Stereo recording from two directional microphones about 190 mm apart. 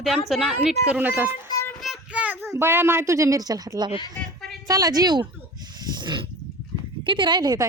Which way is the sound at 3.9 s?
25° left (ahead or behind).